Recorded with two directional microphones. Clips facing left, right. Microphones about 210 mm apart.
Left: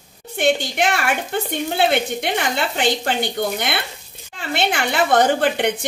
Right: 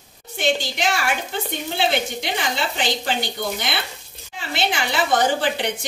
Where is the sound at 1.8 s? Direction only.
55° left (ahead or behind).